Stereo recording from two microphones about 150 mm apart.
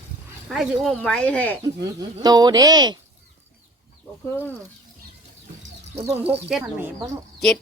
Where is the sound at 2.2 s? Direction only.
25° right (ahead or behind).